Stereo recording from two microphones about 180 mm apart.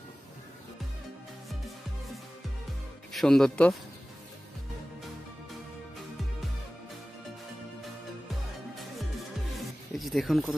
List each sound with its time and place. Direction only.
3.1 s speech: centre (ahead or behind)
9.9 s speech: centre (ahead or behind)